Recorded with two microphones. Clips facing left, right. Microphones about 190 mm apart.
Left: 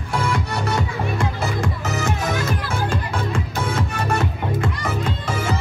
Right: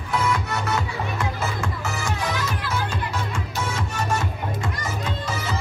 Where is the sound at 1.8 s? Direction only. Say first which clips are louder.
Left 4 dB; 45° left (ahead or behind).